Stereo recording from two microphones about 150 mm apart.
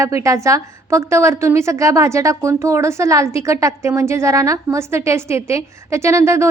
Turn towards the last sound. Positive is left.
turn(degrees=-20)  # may be behind; listen again after turning